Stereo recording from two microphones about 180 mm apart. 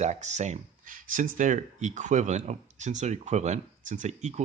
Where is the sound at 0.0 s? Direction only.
40° right (ahead or behind).